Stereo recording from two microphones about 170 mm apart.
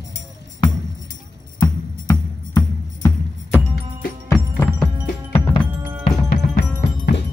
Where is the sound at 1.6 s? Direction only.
20° left (ahead or behind).